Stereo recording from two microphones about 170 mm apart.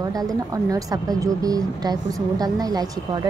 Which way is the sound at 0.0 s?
20° right (ahead or behind).